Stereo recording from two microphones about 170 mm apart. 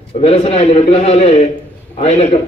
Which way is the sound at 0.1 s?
35° left (ahead or behind).